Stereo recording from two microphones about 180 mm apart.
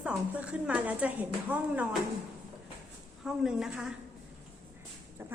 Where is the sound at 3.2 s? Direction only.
5° right (ahead or behind).